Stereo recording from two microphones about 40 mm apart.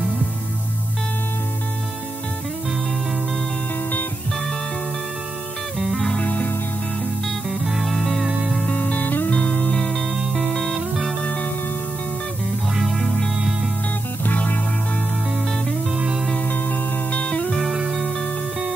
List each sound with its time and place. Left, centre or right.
5.8 s music: centre
6.2 s music: left
7.2 s music: centre
8.6 s music: left; by 10.8 s centre
11.2 s music: left
12.9 s music: centre
14.2 s music: left
16.3 s music: left
17.1 s music: left